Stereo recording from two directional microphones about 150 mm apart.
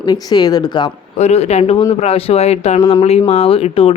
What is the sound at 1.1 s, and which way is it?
Speech, 45° left (ahead or behind).